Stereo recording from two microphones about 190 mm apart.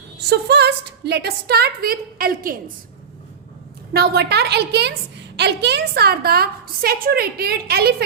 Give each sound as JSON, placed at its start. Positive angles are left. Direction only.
{"t": 0.3, "sound": "a woman's voice", "side_deg": -60}
{"t": 3.9, "sound": "a woman's voice", "side_deg": -55}